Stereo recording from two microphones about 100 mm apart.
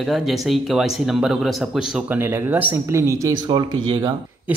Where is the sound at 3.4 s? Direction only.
50° right (ahead or behind).